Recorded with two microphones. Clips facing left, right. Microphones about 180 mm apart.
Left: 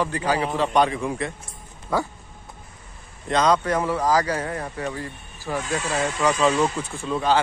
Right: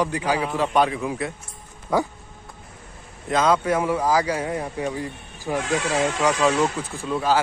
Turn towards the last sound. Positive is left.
turn(degrees=-5)  # may be behind; listen again after turning